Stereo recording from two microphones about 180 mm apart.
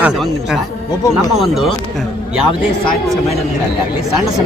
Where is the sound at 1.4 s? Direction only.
Centre (ahead or behind).